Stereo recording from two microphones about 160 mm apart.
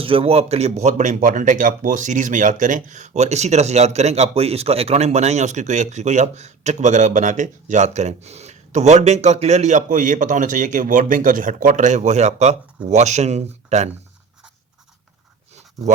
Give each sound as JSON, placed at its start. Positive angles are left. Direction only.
{"t": 0.0, "sound": "speech", "side_deg": -35}